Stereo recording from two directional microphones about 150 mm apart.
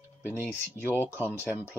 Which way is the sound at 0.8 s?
15° left (ahead or behind).